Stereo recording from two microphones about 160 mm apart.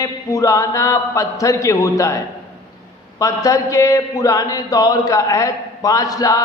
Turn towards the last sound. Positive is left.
turn(degrees=20)  # may be behind; listen again after turning